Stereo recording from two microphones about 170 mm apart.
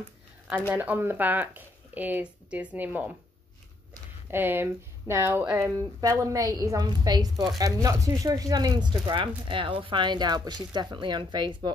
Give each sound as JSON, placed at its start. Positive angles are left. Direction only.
{"t": 0.7, "sound": "speech", "side_deg": -10}
{"t": 4.3, "sound": "speech", "side_deg": -10}